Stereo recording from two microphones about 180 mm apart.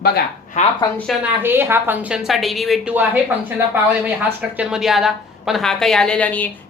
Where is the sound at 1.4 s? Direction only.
10° right (ahead or behind).